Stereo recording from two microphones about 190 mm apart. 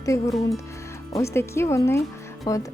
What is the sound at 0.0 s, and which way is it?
Speech, 15° left (ahead or behind).